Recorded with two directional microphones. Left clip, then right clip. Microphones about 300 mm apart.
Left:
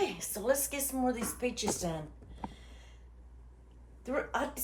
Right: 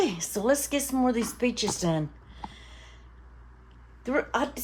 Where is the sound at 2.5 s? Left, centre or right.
Right.